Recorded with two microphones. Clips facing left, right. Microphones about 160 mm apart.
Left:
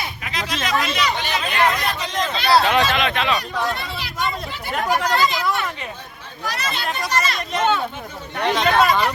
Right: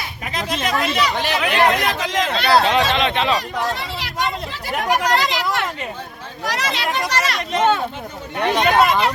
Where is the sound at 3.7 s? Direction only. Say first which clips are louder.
Right 2 dB; 85° right.